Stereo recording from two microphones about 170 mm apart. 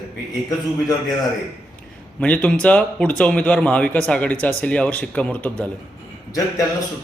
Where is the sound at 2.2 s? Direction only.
5° left (ahead or behind).